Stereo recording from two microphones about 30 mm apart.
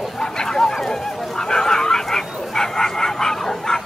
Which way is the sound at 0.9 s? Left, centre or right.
Centre.